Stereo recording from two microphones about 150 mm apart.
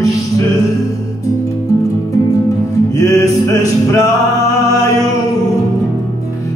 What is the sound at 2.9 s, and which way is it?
Music, 20° left (ahead or behind).